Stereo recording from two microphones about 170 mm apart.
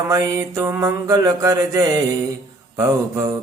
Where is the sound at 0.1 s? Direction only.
20° right (ahead or behind).